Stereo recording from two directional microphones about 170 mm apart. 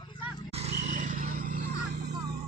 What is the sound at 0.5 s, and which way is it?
Vehicle, 40° right (ahead or behind).